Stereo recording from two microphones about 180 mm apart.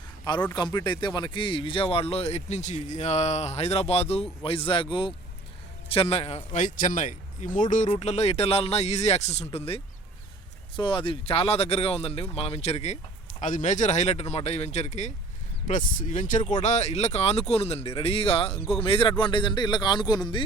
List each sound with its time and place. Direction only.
0.5 s speech: 25° left (ahead or behind)